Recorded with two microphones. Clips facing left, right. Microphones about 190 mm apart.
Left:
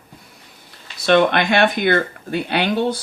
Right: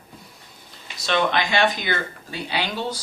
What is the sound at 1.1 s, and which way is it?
Speech, 60° left (ahead or behind).